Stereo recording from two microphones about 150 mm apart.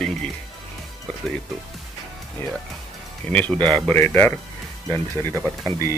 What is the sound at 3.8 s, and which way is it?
Speech, 10° left (ahead or behind).